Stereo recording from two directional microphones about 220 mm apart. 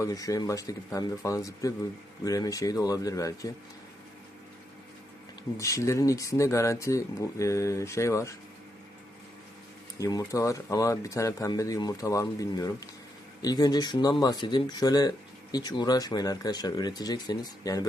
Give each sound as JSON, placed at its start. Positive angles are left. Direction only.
{"t": 0.0, "sound": "speech", "side_deg": 15}
{"t": 5.5, "sound": "speech", "side_deg": 15}
{"t": 10.0, "sound": "speech", "side_deg": 15}